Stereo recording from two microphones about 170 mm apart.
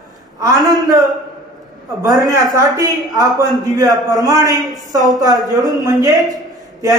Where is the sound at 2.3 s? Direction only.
20° right (ahead or behind).